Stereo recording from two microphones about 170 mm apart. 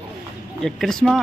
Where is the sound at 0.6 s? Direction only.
5° left (ahead or behind).